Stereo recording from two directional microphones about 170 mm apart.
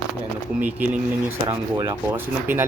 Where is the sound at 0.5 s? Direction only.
10° right (ahead or behind).